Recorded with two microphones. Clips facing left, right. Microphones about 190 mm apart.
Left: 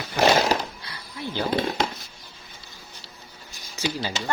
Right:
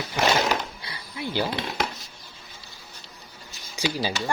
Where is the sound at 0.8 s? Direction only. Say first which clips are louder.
Right 2 dB; 15° right (ahead or behind).